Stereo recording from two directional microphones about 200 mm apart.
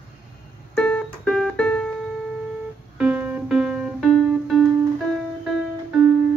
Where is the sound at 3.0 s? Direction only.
5° right (ahead or behind).